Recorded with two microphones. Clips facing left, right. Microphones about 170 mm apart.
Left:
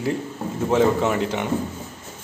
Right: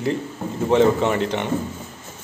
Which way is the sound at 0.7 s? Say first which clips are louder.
Right 2 dB; 5° left (ahead or behind).